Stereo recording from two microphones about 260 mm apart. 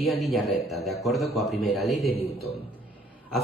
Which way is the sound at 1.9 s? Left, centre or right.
Left.